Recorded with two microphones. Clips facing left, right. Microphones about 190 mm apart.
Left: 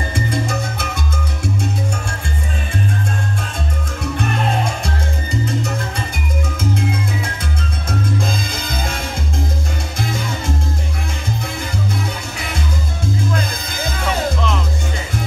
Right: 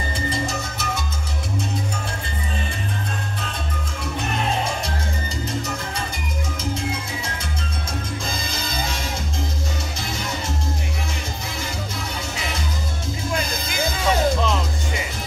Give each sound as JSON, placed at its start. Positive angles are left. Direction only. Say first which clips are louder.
{"t": 0.1, "sound": "music", "louder": "left 4 dB", "side_deg": 55}